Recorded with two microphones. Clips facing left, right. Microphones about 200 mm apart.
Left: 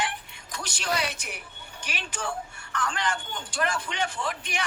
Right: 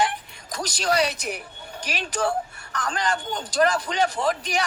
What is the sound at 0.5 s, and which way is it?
A man's voice, 40° right (ahead or behind).